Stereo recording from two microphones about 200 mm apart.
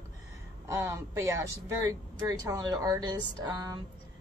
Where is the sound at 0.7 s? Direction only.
15° right (ahead or behind).